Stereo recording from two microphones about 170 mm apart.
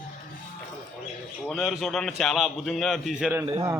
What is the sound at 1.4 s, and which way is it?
A man's voice, centre (ahead or behind).